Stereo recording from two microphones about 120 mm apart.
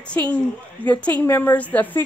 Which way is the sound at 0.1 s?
10° left (ahead or behind).